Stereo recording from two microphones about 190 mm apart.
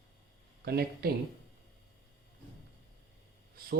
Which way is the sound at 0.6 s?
55° right (ahead or behind).